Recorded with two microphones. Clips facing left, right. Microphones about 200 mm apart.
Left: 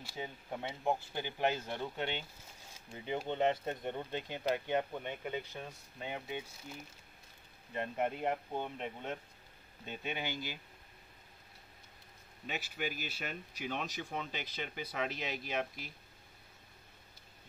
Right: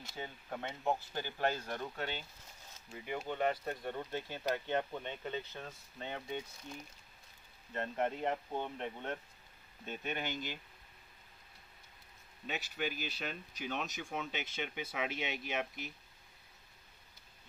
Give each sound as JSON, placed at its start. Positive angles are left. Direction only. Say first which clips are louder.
{"t": 0.0, "sound": "speech", "louder": "left 2 dB", "side_deg": 10}
{"t": 12.4, "sound": "speech", "louder": "even", "side_deg": 5}